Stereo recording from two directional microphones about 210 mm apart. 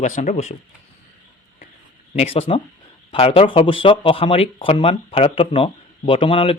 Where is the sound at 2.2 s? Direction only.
30° left (ahead or behind).